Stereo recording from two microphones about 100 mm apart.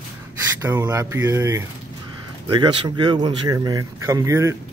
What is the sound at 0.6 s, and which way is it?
Speech, 25° right (ahead or behind).